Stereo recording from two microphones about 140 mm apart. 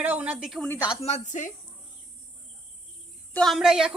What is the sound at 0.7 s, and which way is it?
Speech, 25° left (ahead or behind).